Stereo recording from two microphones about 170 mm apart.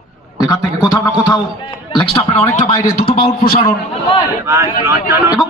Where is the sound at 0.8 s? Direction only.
20° left (ahead or behind).